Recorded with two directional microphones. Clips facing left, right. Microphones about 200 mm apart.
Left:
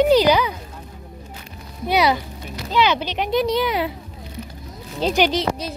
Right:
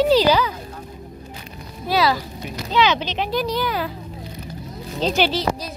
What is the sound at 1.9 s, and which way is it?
Speech, 20° left (ahead or behind).